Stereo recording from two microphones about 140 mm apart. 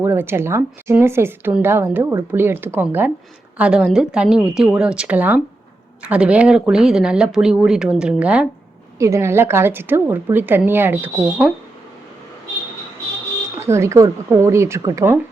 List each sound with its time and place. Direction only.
0.0 s a woman's voice: 15° right (ahead or behind)
9.0 s a woman's voice: 20° right (ahead or behind)
13.6 s speech: 20° right (ahead or behind)